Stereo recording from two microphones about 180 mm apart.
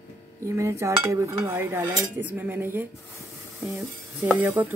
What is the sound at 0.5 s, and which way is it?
Dishes, 15° right (ahead or behind).